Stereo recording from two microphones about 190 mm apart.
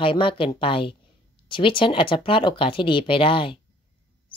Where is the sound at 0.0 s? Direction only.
25° left (ahead or behind).